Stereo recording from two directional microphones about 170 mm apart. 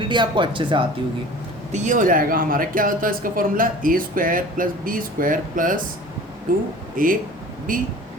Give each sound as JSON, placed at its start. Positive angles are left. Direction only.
{"t": 0.0, "sound": "speech", "side_deg": -25}
{"t": 1.7, "sound": "speech", "side_deg": -45}
{"t": 6.9, "sound": "speech", "side_deg": -55}